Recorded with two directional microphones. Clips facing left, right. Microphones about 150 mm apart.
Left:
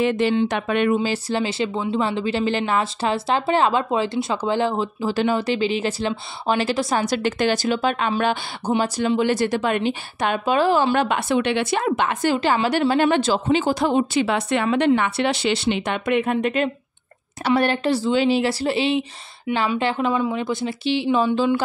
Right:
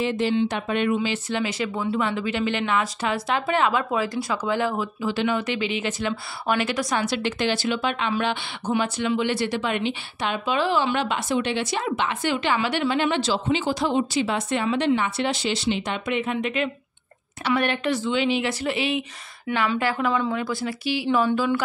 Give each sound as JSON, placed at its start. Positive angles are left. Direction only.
{"t": 0.0, "sound": "speech", "side_deg": 65}
{"t": 0.9, "sound": "a woman's voice", "side_deg": 35}